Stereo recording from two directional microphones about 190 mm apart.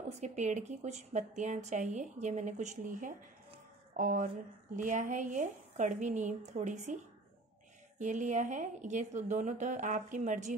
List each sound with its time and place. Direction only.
0.2 s speech: 40° right (ahead or behind)
8.0 s speech: 40° right (ahead or behind)